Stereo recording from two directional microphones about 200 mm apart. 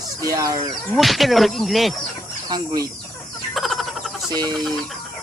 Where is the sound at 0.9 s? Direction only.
Centre (ahead or behind).